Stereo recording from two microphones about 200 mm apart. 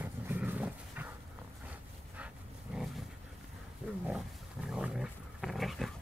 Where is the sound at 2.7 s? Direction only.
5° right (ahead or behind).